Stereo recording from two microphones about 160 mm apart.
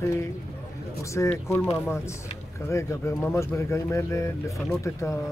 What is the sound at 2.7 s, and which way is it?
Speech, 20° left (ahead or behind).